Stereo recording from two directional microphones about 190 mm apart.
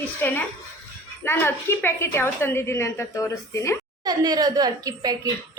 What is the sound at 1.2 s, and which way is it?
A woman's voice, 10° left (ahead or behind).